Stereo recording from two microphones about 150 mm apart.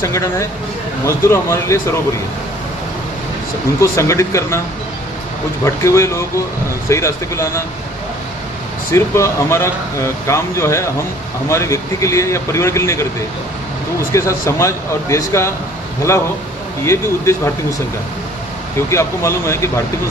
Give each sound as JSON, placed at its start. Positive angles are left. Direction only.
{"t": 0.0, "sound": "a man's voice", "side_deg": 20}
{"t": 3.8, "sound": "a man's voice", "side_deg": 20}
{"t": 5.9, "sound": "a man's voice", "side_deg": 20}
{"t": 8.9, "sound": "a man's voice", "side_deg": 20}
{"t": 14.1, "sound": "a man's voice", "side_deg": 20}
{"t": 16.8, "sound": "a man's voice", "side_deg": 20}
{"t": 18.9, "sound": "a man's voice", "side_deg": 20}